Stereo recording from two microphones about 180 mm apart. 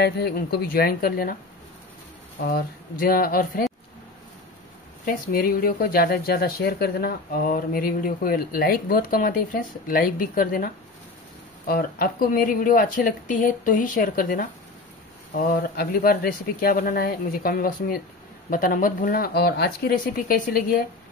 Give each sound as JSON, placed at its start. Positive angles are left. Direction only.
{"t": 0.0, "sound": "speech", "side_deg": 65}
{"t": 2.4, "sound": "speech", "side_deg": 55}
{"t": 5.0, "sound": "speech", "side_deg": 55}